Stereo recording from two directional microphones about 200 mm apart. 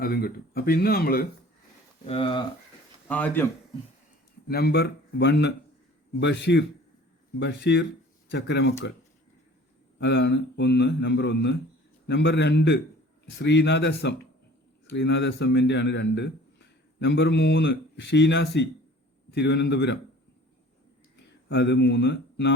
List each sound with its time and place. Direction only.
0.0 s speech: 50° left (ahead or behind)
2.0 s speech: 25° left (ahead or behind)
3.1 s speech: 10° left (ahead or behind)
4.4 s a man's voice: 55° left (ahead or behind)
10.0 s a man's voice: 60° left (ahead or behind)
21.5 s a man's voice: 60° left (ahead or behind)